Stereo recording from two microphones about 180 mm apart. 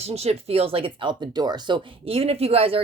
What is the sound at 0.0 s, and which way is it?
Speech, 35° right (ahead or behind).